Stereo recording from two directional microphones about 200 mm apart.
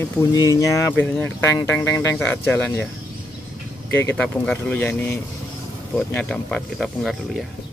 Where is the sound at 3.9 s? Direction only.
10° left (ahead or behind).